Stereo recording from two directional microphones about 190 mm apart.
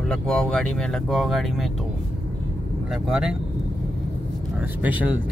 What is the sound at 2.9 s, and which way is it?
Speech, centre (ahead or behind).